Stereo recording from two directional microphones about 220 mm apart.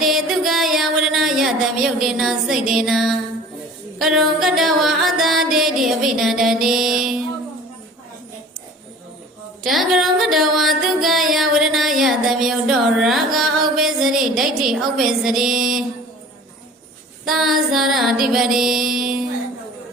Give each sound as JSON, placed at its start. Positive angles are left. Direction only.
{"t": 0.0, "sound": "music", "side_deg": 0}
{"t": 9.6, "sound": "music", "side_deg": 0}
{"t": 17.2, "sound": "music", "side_deg": 0}